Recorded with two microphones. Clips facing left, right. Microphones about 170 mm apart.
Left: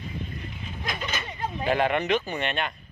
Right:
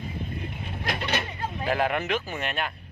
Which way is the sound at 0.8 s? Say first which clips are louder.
Right 4 dB; 65° right (ahead or behind).